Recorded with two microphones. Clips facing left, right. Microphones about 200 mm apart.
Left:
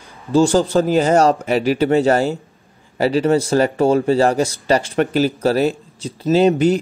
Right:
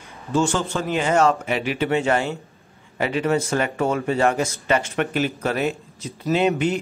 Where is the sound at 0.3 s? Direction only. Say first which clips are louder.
Left 8 dB; 35° left (ahead or behind).